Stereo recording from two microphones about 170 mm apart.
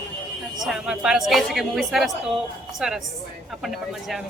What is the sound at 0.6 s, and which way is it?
Speech, 5° right (ahead or behind).